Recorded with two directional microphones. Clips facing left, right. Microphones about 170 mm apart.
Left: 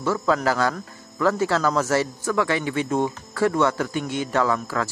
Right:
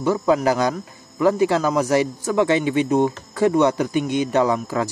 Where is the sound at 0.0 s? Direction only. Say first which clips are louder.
Right 4 dB; 15° right (ahead or behind).